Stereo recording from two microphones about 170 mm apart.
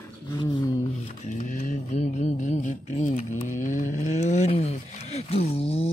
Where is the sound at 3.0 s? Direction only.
50° left (ahead or behind).